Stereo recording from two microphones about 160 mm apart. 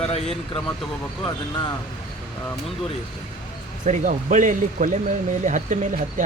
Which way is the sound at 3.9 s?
50° right (ahead or behind).